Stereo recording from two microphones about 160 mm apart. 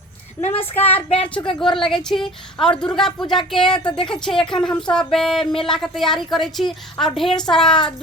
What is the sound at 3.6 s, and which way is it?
Speech, 30° left (ahead or behind).